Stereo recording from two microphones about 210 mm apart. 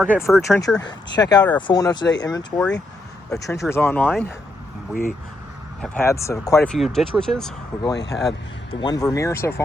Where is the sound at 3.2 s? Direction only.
15° left (ahead or behind).